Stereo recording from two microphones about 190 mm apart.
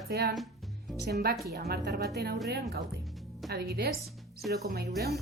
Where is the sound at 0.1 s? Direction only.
55° right (ahead or behind).